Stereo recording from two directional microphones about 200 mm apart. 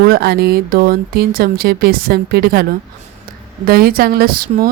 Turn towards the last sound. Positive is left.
turn(degrees=-45)  # may be behind; listen again after turning